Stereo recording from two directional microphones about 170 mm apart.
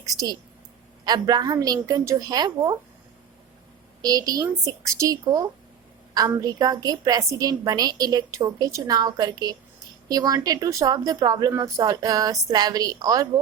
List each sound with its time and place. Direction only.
0.1 s a woman's voice: 20° right (ahead or behind)
4.0 s a woman's voice: 20° right (ahead or behind)